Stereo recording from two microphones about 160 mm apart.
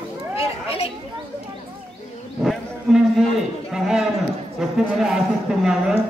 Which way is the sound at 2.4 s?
Centre (ahead or behind).